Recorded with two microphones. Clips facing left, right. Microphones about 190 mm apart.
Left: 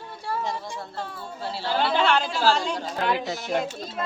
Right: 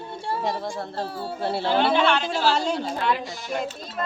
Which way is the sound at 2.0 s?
40° left (ahead or behind).